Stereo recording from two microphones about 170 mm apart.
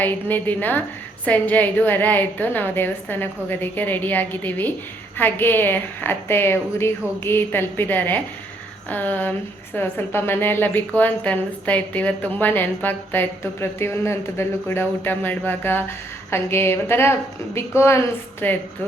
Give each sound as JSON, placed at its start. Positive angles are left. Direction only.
{"t": 0.0, "sound": "a woman's voice", "side_deg": 10}